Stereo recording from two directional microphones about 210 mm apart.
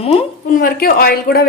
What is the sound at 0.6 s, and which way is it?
Speech, 45° left (ahead or behind).